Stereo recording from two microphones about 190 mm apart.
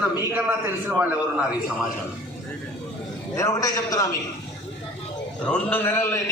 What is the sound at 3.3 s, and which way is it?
Speech, 15° left (ahead or behind).